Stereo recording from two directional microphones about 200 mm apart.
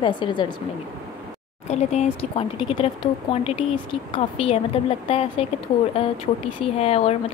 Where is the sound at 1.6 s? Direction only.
35° left (ahead or behind).